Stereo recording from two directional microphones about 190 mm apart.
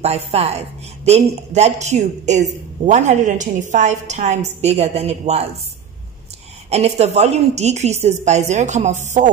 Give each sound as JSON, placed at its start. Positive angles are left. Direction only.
{"t": 0.0, "sound": "a woman's voice", "side_deg": -35}
{"t": 6.7, "sound": "a woman's voice", "side_deg": -35}